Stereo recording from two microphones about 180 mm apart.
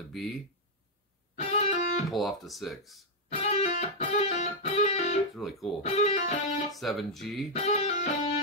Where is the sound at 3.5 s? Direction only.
40° left (ahead or behind).